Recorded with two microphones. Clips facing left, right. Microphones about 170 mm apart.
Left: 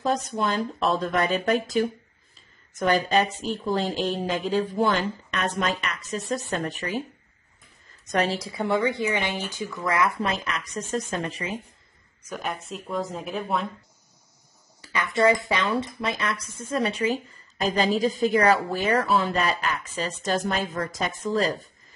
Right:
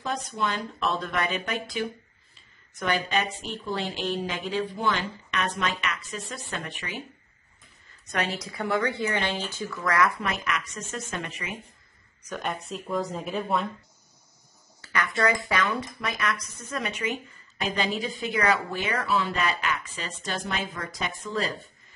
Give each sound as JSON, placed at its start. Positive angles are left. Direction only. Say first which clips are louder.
{"t": 0.0, "sound": "speech", "louder": "left 5 dB", "side_deg": 40}
{"t": 8.1, "sound": "speech", "louder": "left 5 dB", "side_deg": 35}
{"t": 8.5, "sound": "a woman's voice", "louder": "left 3 dB", "side_deg": 25}
{"t": 12.3, "sound": "speech", "louder": "even", "side_deg": 0}
{"t": 14.8, "sound": "speech", "louder": "left 4 dB", "side_deg": 20}